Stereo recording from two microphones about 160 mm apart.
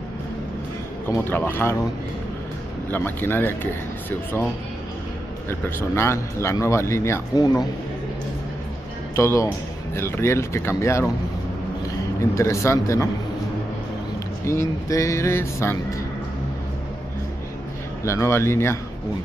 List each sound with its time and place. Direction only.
1.0 s speech: 15° left (ahead or behind)
2.9 s speech: 15° left (ahead or behind)
5.5 s speech: 15° left (ahead or behind)
9.1 s speech: 20° left (ahead or behind)
12.4 s speech: 20° left (ahead or behind)
14.4 s speech: 15° left (ahead or behind)
18.0 s speech: 20° left (ahead or behind)